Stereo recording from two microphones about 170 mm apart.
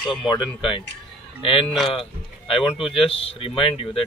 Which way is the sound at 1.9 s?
30° left (ahead or behind).